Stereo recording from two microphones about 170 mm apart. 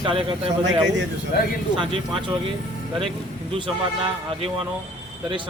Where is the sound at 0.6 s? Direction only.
90° right.